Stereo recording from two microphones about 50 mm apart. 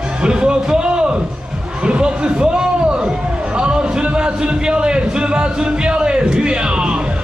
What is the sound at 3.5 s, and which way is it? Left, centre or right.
Music, centre.